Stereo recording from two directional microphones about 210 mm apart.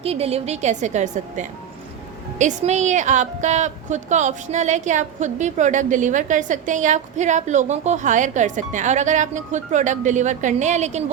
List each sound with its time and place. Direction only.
0.0 s a woman's voice: 30° right (ahead or behind)